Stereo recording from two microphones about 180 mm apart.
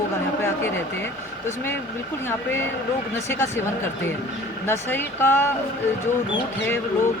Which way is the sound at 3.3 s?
15° left (ahead or behind).